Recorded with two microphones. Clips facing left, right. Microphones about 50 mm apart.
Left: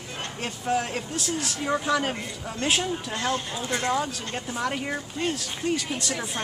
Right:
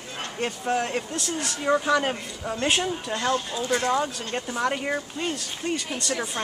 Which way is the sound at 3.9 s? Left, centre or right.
Centre.